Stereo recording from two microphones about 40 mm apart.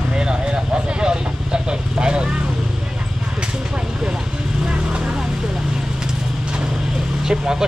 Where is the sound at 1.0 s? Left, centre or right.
Right.